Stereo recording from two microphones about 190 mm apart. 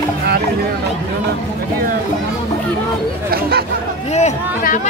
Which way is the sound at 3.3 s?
55° right (ahead or behind).